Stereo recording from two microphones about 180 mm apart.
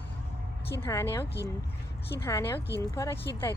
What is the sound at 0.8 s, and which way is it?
Speech, 15° left (ahead or behind).